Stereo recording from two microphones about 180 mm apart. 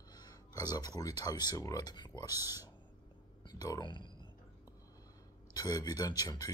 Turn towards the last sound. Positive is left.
turn(degrees=20)  # may be behind; listen again after turning